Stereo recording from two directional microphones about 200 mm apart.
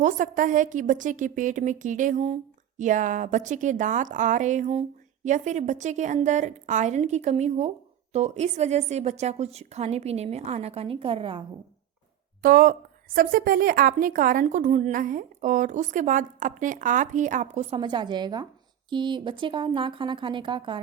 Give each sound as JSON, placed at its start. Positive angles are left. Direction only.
{"t": 0.0, "sound": "a woman's voice", "side_deg": -40}
{"t": 12.4, "sound": "a woman's voice", "side_deg": -45}